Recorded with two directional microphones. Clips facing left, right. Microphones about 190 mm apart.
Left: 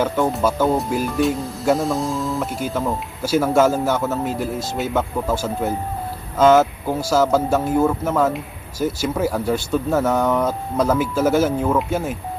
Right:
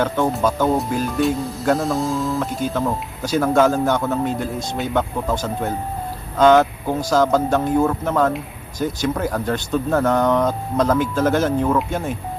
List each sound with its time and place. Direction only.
0.0 s speech: 5° left (ahead or behind)